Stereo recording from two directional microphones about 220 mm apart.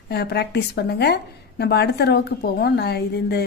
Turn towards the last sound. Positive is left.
turn(degrees=50)  # may be behind; listen again after turning